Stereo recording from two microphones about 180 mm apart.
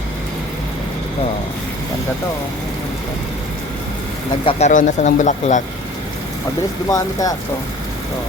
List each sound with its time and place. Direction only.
4.4 s speech: 35° left (ahead or behind)
6.9 s speech: 20° left (ahead or behind)